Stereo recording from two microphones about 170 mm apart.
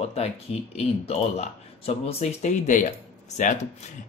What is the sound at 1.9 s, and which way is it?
Speech, 35° left (ahead or behind).